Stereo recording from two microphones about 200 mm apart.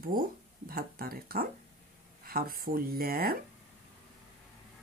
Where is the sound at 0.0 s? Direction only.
45° right (ahead or behind).